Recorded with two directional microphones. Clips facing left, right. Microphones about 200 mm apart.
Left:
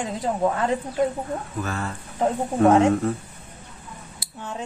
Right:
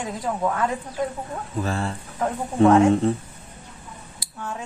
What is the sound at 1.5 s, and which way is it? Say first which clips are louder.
Speech: right 7 dB; 30° right (ahead or behind).